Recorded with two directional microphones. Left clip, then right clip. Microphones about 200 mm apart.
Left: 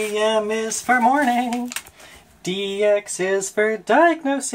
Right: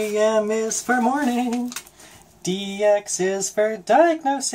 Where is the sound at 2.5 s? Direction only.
20° left (ahead or behind).